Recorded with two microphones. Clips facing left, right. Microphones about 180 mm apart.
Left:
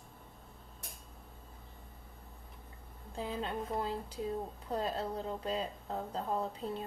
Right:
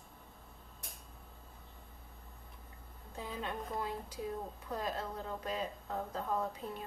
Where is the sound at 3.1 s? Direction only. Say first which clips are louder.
Left 4 dB; 30° left (ahead or behind).